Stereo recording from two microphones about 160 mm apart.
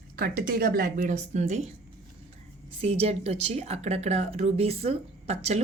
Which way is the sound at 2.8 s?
40° right (ahead or behind).